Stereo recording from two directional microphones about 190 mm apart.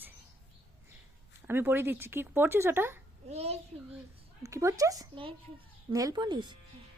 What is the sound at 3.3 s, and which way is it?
Speech, 35° right (ahead or behind).